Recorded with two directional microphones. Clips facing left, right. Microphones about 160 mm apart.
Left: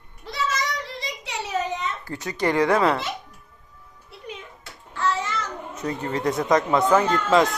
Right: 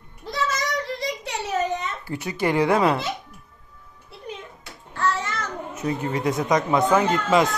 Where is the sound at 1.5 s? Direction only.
45° right (ahead or behind).